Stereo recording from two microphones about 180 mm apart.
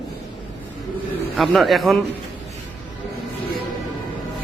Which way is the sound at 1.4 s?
Centre (ahead or behind).